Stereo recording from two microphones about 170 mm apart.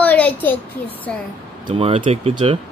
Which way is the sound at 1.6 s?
35° right (ahead or behind).